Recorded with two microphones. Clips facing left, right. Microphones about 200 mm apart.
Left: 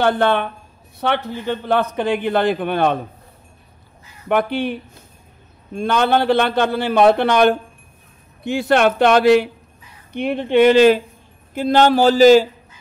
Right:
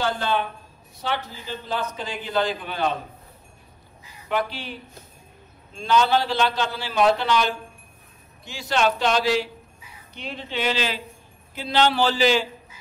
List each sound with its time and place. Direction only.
0.0 s a man's voice: 60° left (ahead or behind)
4.3 s a man's voice: 55° left (ahead or behind)